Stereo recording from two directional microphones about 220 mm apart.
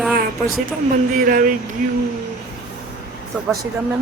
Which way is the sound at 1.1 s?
40° right (ahead or behind).